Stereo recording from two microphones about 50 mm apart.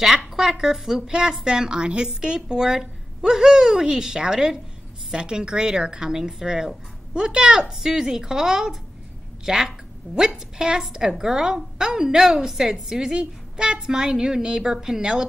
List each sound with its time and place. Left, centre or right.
0.0 s speech: centre